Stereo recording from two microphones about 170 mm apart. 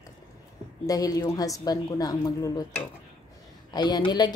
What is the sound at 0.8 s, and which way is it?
A woman's voice, 20° left (ahead or behind).